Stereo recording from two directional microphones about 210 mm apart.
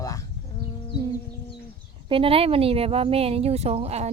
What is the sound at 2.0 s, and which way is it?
A woman's voice, 25° right (ahead or behind).